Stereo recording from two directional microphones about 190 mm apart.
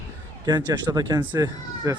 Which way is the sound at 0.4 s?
20° right (ahead or behind).